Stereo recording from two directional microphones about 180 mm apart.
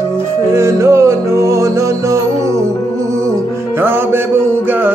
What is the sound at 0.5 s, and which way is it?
Music, 15° right (ahead or behind).